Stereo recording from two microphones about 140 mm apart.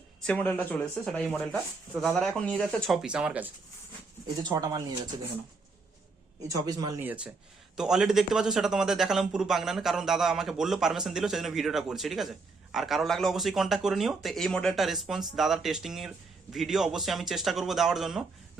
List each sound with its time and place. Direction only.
0.2 s speech: 10° left (ahead or behind); by 3.5 s 10° right (ahead or behind)
4.4 s speech: 30° right (ahead or behind)
6.7 s speech: 30° right (ahead or behind)
7.0 s speech: 10° right (ahead or behind)